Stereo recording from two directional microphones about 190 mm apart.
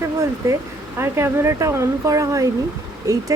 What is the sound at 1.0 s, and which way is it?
Speech, 15° right (ahead or behind).